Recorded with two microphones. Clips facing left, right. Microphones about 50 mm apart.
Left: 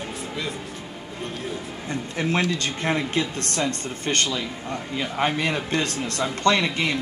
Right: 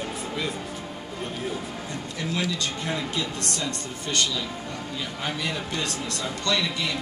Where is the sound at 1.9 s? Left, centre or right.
Left.